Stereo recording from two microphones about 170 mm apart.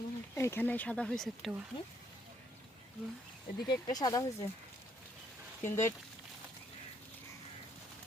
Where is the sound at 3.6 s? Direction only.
20° left (ahead or behind).